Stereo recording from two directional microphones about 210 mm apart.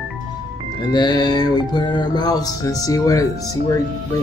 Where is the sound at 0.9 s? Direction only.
20° left (ahead or behind).